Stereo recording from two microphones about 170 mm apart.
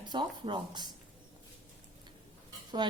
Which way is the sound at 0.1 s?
25° right (ahead or behind).